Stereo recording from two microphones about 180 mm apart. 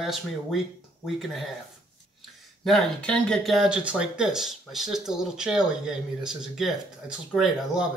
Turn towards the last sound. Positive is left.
turn(degrees=-5)  # may be behind; listen again after turning